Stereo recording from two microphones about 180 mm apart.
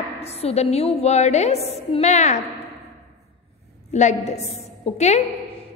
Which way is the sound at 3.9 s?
40° left (ahead or behind).